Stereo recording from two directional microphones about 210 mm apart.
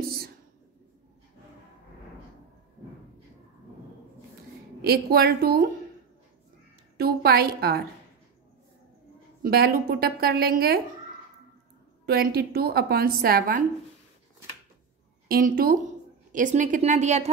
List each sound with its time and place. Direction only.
4.8 s a woman's voice: 45° right (ahead or behind)
7.0 s a woman's voice: 50° right (ahead or behind)
9.4 s a woman's voice: 45° right (ahead or behind)
12.1 s a woman's voice: 45° right (ahead or behind)
15.2 s a woman's voice: 45° right (ahead or behind)